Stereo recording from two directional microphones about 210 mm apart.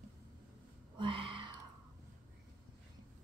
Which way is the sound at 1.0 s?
25° right (ahead or behind).